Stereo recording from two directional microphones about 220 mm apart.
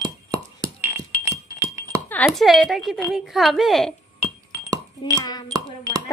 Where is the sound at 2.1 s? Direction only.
5° left (ahead or behind).